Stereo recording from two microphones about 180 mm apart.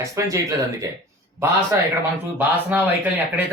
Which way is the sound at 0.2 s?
20° right (ahead or behind).